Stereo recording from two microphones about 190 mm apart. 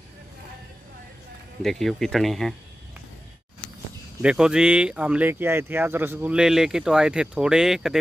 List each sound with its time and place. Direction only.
1.6 s speech: centre (ahead or behind)
4.2 s speech: 5° right (ahead or behind)